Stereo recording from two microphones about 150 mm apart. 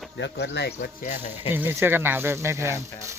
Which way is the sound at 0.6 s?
90° left.